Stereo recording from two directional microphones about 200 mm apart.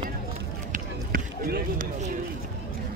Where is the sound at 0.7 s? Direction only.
50° right (ahead or behind).